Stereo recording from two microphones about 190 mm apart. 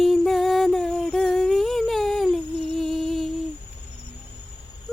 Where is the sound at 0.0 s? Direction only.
Centre (ahead or behind).